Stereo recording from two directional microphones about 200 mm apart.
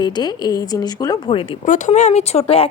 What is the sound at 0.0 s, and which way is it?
Speech, 20° left (ahead or behind).